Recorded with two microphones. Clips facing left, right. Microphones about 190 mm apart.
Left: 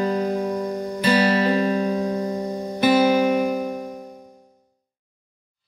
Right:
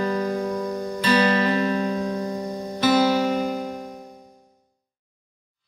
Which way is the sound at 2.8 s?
15° left (ahead or behind).